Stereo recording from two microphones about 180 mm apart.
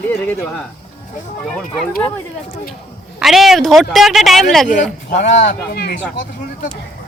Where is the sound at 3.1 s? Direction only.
Centre (ahead or behind).